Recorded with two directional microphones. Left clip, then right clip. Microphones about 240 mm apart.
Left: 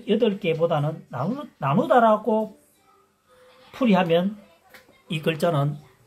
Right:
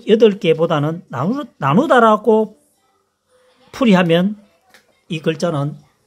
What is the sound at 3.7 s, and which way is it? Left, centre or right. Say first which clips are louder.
Speech: right 6 dB; right.